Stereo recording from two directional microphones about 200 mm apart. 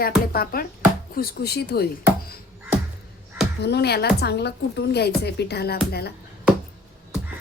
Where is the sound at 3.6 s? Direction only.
55° left (ahead or behind).